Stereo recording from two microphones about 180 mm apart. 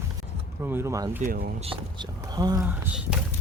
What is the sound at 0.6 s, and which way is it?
Speech, 10° right (ahead or behind).